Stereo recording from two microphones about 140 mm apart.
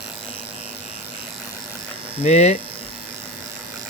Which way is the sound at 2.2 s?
55° left (ahead or behind).